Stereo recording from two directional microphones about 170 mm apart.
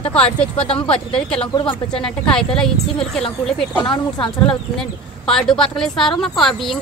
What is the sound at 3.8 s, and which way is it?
Speech, 30° left (ahead or behind).